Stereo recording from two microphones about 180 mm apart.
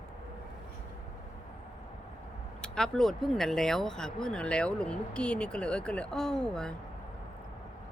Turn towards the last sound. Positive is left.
turn(degrees=5)  # may be behind; listen again after turning